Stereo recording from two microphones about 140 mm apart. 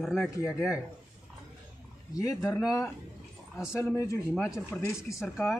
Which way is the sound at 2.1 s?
25° left (ahead or behind).